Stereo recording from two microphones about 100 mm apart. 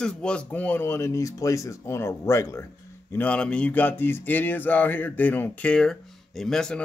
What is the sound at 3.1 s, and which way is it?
Speech, 15° left (ahead or behind).